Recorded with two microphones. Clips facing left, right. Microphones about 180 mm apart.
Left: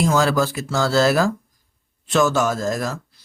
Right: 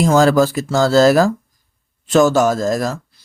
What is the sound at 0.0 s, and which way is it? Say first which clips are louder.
Speech: right 6 dB; 45° right (ahead or behind).